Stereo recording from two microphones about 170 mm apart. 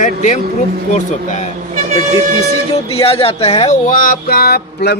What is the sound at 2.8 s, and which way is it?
Speech, 35° left (ahead or behind).